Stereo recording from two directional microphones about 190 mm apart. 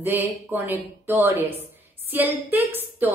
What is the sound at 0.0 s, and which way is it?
A woman's voice, 10° right (ahead or behind).